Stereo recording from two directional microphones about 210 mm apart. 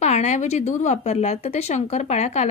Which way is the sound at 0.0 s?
35° left (ahead or behind).